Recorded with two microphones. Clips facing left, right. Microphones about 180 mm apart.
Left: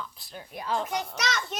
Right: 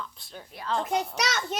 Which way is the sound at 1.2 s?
45° right (ahead or behind).